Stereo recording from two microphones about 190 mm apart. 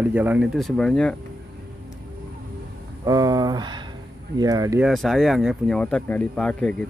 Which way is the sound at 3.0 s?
20° right (ahead or behind).